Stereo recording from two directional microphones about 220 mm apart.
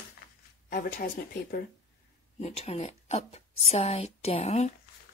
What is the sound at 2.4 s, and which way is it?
Speech, 30° left (ahead or behind).